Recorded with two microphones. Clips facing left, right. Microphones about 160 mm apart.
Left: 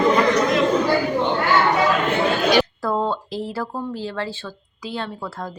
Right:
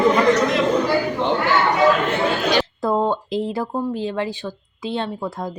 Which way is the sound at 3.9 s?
20° right (ahead or behind).